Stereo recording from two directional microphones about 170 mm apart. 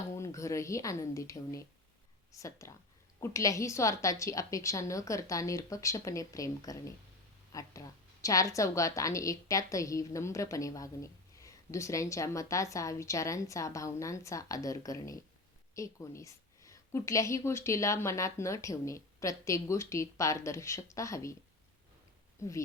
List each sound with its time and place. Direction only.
0.1 s a woman's voice: 15° left (ahead or behind)
22.4 s speech: 20° left (ahead or behind)